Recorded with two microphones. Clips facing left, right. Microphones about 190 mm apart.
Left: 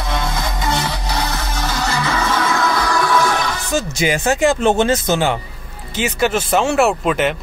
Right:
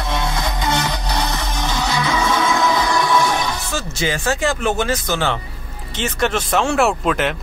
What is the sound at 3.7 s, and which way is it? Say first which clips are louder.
Speech: left 4 dB; 15° left (ahead or behind).